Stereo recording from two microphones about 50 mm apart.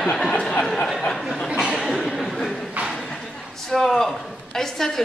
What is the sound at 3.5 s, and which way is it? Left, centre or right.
A man's voice, centre.